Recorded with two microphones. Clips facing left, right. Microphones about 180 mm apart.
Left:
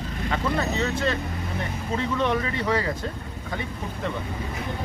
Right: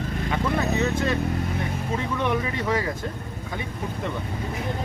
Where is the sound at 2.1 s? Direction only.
15° right (ahead or behind).